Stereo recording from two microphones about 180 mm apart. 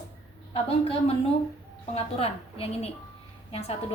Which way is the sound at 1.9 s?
35° left (ahead or behind).